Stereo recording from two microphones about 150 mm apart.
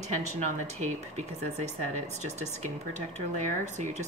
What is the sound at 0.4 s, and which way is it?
Speech, 50° right (ahead or behind).